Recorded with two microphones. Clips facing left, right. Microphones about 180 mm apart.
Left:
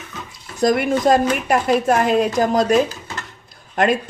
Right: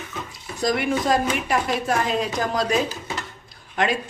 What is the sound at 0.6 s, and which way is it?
Speech, 45° left (ahead or behind).